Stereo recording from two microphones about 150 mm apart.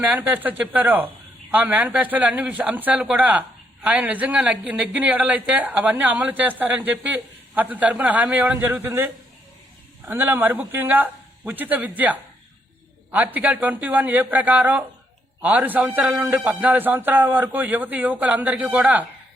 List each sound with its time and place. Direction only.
0.0 s speech: 10° right (ahead or behind)
10.1 s speech: 15° right (ahead or behind)